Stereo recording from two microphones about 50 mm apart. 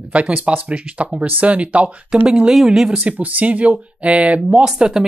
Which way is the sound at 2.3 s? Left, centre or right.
Centre.